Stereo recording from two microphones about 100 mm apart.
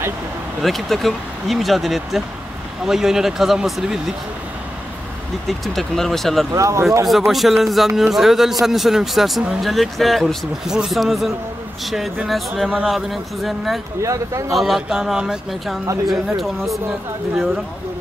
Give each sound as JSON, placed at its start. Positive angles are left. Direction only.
{"t": 0.6, "sound": "speech", "side_deg": 0}
{"t": 5.5, "sound": "speech", "side_deg": 0}
{"t": 6.5, "sound": "speech", "side_deg": -30}
{"t": 7.1, "sound": "speech", "side_deg": 0}
{"t": 14.0, "sound": "speech", "side_deg": -30}
{"t": 14.6, "sound": "speech", "side_deg": -5}